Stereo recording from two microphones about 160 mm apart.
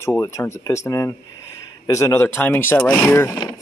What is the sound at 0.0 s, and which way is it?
Speech, 15° left (ahead or behind).